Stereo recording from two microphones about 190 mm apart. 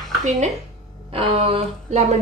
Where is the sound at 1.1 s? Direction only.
30° right (ahead or behind).